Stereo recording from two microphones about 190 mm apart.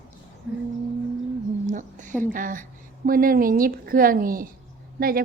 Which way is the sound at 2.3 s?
45° right (ahead or behind).